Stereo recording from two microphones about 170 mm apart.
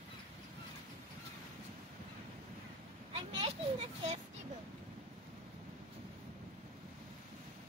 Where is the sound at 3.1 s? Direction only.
35° right (ahead or behind).